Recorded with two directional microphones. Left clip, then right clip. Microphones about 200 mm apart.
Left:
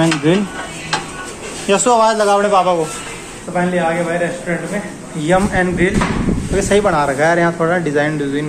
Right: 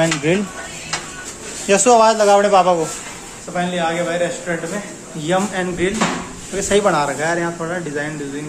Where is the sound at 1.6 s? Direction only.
20° right (ahead or behind).